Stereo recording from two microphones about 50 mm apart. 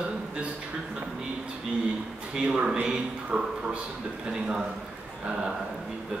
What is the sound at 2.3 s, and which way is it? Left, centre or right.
Speech, centre.